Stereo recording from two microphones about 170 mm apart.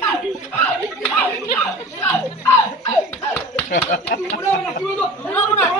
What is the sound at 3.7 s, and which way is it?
Speech, 50° left (ahead or behind).